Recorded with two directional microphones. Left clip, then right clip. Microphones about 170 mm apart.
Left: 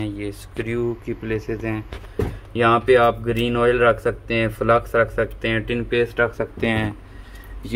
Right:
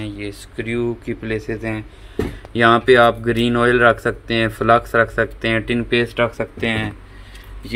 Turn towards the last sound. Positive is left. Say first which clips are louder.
# right 1 dB
turn(degrees=15)  # may be behind; listen again after turning